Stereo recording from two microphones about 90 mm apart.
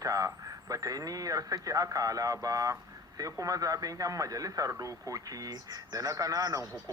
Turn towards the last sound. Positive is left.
turn(degrees=-40)  # may be behind; listen again after turning